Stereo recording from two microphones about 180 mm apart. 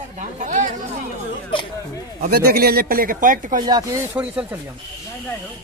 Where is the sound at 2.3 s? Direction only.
60° right (ahead or behind).